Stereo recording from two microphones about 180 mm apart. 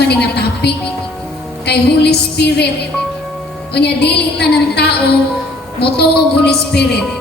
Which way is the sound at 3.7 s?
65° left (ahead or behind).